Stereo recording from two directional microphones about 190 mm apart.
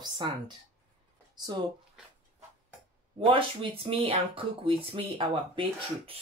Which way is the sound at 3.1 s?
25° right (ahead or behind).